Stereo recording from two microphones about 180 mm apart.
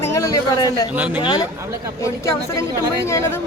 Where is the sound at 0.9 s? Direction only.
10° right (ahead or behind).